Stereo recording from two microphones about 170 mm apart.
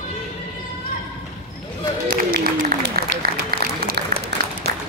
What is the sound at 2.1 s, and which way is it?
Applause, 65° right (ahead or behind).